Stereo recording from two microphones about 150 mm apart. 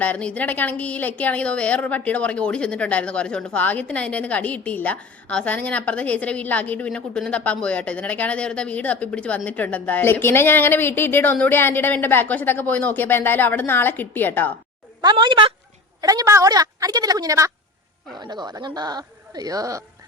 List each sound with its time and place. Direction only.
0.0 s a woman's voice: 10° left (ahead or behind)
15.0 s a woman's voice: 30° right (ahead or behind)